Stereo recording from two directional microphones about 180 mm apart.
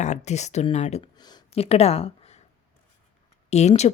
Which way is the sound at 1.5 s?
35° left (ahead or behind).